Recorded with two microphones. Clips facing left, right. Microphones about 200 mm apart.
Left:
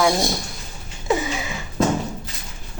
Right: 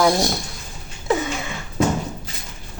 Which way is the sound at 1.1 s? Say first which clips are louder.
Even; centre (ahead or behind).